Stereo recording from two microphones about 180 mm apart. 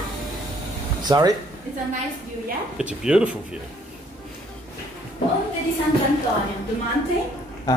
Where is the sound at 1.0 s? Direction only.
20° right (ahead or behind).